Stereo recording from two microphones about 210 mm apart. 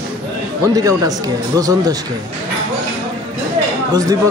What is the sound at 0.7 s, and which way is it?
Speech, 15° right (ahead or behind).